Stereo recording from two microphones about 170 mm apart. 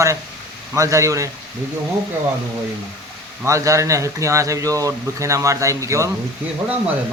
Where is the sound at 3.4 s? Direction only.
20° right (ahead or behind).